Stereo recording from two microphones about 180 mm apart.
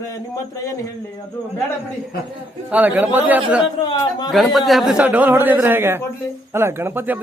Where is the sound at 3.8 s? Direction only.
20° left (ahead or behind).